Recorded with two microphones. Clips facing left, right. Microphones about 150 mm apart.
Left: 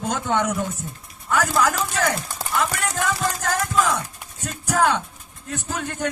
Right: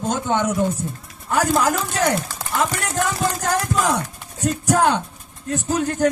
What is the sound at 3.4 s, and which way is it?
Speech, 40° right (ahead or behind).